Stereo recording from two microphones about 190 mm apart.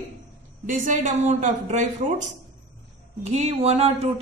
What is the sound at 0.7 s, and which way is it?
Speech, 45° right (ahead or behind).